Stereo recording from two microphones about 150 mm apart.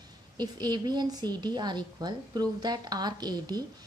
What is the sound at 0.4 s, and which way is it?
A woman's voice, 25° right (ahead or behind).